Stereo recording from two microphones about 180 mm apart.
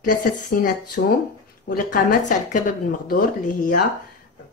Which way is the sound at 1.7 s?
50° left (ahead or behind).